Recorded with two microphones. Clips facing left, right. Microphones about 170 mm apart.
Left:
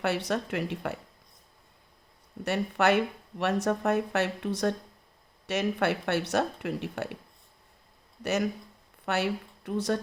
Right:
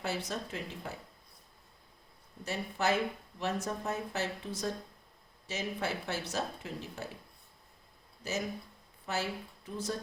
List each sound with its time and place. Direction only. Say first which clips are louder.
0.0 s speech: left 8 dB; 65° left (ahead or behind)
2.4 s speech: left 7 dB; 70° left (ahead or behind)
8.2 s a woman's voice: left 8 dB; 70° left (ahead or behind)